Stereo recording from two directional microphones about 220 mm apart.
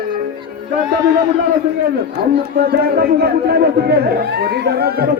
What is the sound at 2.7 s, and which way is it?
Speech, 45° right (ahead or behind).